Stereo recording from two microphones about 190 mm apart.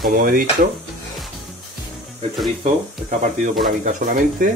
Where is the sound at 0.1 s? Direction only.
50° right (ahead or behind).